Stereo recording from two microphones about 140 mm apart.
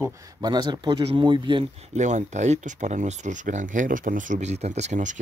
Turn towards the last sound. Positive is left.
turn(degrees=-60)  # may be behind; listen again after turning